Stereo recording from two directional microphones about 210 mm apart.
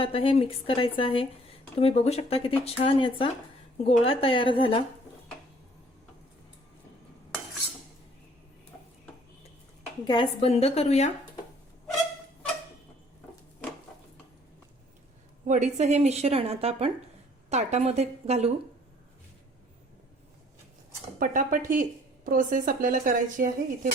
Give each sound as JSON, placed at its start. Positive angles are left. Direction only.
{"t": 0.0, "sound": "a woman's voice", "side_deg": 25}
{"t": 10.1, "sound": "a woman's voice", "side_deg": 25}
{"t": 15.4, "sound": "speech", "side_deg": -35}
{"t": 21.2, "sound": "speech", "side_deg": -40}